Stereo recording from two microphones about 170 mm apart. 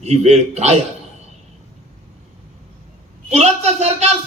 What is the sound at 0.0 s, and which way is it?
Speech, 40° right (ahead or behind).